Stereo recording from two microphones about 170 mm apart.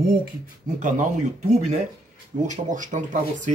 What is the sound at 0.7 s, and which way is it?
Speech, 50° right (ahead or behind).